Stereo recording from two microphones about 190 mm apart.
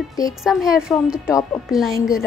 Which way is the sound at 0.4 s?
Centre (ahead or behind).